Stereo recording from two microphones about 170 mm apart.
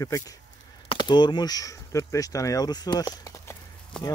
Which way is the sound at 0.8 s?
25° left (ahead or behind).